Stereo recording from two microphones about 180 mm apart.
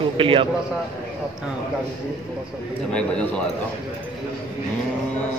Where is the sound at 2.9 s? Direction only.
5° left (ahead or behind).